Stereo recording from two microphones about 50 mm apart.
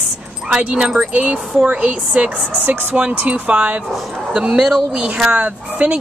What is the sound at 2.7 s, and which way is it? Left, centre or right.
Speech, right.